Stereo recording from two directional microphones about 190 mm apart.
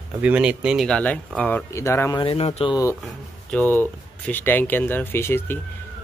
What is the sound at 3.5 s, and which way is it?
Speech, 10° left (ahead or behind).